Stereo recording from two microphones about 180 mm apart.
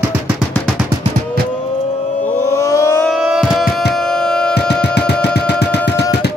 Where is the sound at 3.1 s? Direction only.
Centre (ahead or behind).